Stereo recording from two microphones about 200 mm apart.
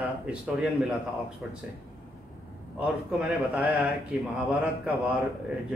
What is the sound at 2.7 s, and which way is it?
Speech, 5° right (ahead or behind).